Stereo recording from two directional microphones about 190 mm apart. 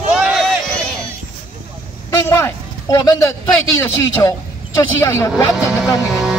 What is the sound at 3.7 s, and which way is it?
A man's voice, 15° left (ahead or behind).